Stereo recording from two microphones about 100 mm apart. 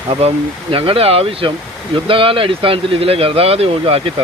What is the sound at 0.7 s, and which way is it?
Speech, 65° right (ahead or behind).